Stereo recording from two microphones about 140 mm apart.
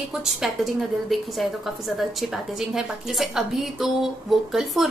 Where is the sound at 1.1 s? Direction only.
Centre (ahead or behind).